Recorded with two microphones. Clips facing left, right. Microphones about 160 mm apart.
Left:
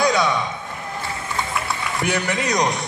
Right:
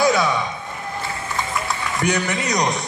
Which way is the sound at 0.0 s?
Centre (ahead or behind).